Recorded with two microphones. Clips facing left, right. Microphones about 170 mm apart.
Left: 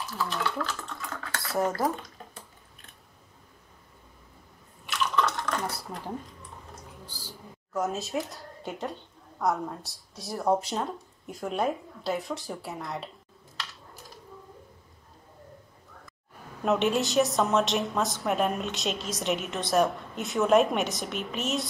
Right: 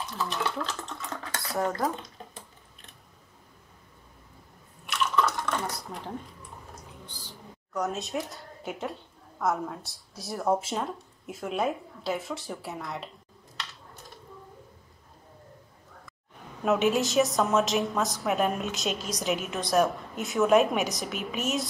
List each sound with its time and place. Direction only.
0.2 s speech: 20° right (ahead or behind)
1.4 s speech: 5° left (ahead or behind)
4.8 s drip: centre (ahead or behind)
7.1 s a sound: 5° left (ahead or behind)
9.4 s a woman's voice: centre (ahead or behind)
16.6 s a woman's voice: centre (ahead or behind)